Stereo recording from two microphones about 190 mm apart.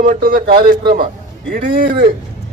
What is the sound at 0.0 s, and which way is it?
Speech, 50° right (ahead or behind).